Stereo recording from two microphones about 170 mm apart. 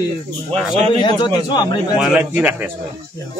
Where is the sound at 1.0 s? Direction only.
25° left (ahead or behind).